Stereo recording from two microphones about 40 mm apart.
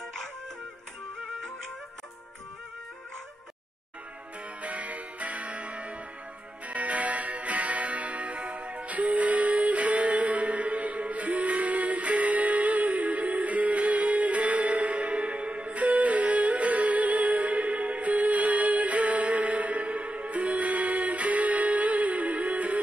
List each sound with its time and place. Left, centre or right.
4.6 s music: right